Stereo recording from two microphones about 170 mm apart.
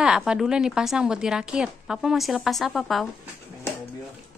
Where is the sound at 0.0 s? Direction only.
5° right (ahead or behind).